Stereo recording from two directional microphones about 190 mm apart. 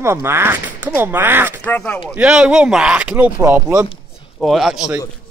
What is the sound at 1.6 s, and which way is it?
Speech, 10° left (ahead or behind).